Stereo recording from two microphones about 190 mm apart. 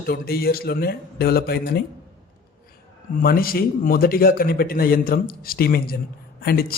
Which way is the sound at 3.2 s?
50° left (ahead or behind).